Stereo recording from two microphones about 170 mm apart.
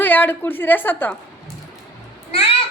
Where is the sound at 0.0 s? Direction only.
10° left (ahead or behind).